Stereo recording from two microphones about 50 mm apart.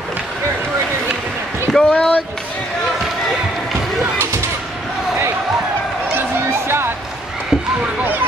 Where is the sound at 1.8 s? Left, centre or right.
Centre.